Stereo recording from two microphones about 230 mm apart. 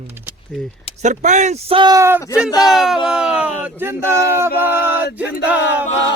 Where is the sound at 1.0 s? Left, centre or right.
Right; by 2.2 s centre.